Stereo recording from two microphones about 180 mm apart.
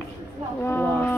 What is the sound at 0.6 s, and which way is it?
Speech, 10° left (ahead or behind).